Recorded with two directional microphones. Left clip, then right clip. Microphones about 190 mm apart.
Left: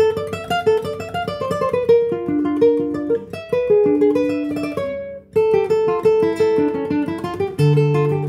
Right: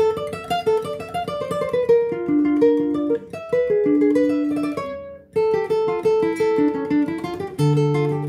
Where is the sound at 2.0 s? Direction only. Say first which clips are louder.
Even; 25° left (ahead or behind).